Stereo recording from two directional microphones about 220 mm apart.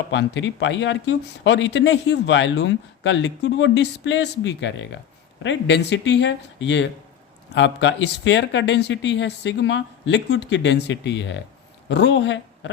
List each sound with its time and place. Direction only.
0.1 s speech: 55° left (ahead or behind)